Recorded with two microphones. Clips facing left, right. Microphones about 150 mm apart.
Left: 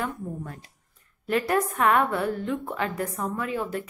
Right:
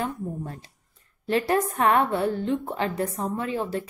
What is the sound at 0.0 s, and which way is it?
A woman's voice, 30° right (ahead or behind).